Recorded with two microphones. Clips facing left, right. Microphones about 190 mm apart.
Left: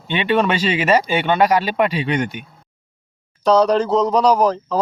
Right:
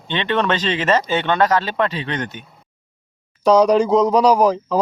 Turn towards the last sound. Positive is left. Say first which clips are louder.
# right 1 dB
turn(degrees=-10)  # may be behind; listen again after turning